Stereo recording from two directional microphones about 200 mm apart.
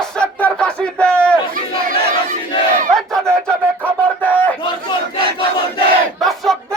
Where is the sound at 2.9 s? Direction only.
Centre (ahead or behind).